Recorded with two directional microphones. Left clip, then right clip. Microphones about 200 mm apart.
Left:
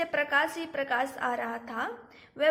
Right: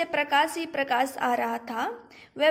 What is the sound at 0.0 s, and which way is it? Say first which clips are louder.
A woman's voice: right 3 dB; 20° right (ahead or behind).